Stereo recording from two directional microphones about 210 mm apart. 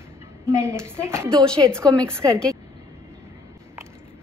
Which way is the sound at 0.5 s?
15° right (ahead or behind).